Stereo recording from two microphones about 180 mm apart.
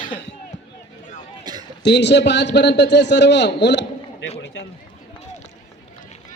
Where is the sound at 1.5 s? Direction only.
25° right (ahead or behind).